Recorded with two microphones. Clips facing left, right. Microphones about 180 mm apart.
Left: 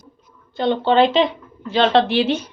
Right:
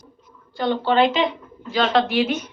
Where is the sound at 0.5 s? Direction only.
25° left (ahead or behind).